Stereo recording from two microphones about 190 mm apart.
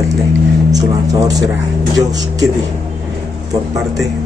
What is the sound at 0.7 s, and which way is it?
Speech, 20° right (ahead or behind).